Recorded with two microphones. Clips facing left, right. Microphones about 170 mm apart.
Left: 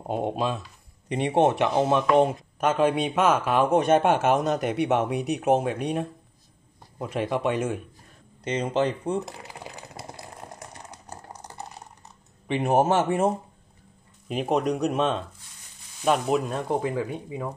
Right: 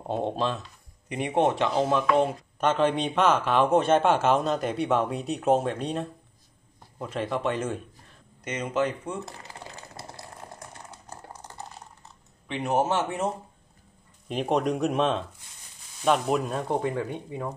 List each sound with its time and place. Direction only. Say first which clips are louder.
0.0 s speech: left 1 dB; 10° left (ahead or behind)
1.0 s speech: left 3 dB; 30° left (ahead or behind)
2.6 s speech: left 1 dB; 10° left (ahead or behind)
8.5 s speech: left 3 dB; 30° left (ahead or behind)
9.2 s a sound: left 2 dB; 15° left (ahead or behind)
12.4 s speech: left 4 dB; 50° left (ahead or behind)
14.3 s speech: left 1 dB; centre (ahead or behind)